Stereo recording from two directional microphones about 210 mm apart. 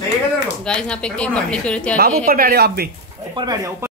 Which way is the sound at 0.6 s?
5° left (ahead or behind).